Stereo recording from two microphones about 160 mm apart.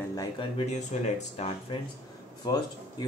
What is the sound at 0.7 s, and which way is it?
Speech, 45° left (ahead or behind).